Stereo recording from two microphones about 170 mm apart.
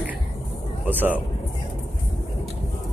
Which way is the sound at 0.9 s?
10° right (ahead or behind).